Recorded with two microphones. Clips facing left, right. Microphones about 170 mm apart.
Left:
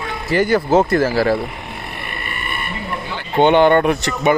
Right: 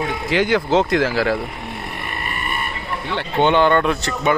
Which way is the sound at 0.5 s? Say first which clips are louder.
Left 3 dB; 10° left (ahead or behind).